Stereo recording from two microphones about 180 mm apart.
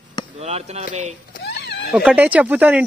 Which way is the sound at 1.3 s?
65° left (ahead or behind).